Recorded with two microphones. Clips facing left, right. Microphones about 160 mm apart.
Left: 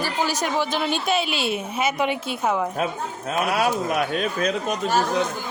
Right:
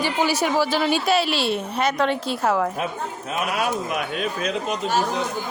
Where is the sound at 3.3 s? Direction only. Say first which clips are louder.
Left 3 dB; 40° left (ahead or behind).